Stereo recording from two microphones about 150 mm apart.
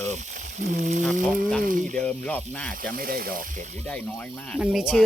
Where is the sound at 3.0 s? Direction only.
75° right (ahead or behind).